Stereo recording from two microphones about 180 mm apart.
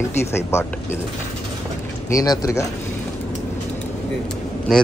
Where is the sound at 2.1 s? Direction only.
20° left (ahead or behind).